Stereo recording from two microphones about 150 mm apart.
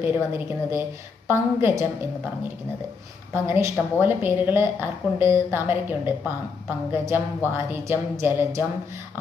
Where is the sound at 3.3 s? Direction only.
15° right (ahead or behind).